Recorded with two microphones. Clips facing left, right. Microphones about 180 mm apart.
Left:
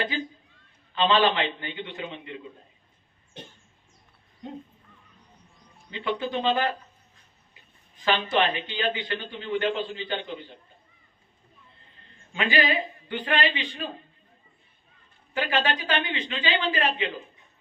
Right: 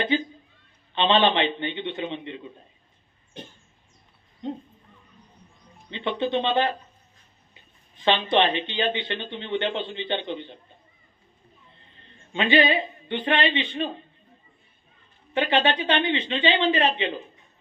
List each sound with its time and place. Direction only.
0.9 s speech: 25° right (ahead or behind)
5.9 s speech: 25° right (ahead or behind)
8.0 s speech: 25° right (ahead or behind)
12.3 s speech: 25° right (ahead or behind)
15.4 s speech: 25° right (ahead or behind)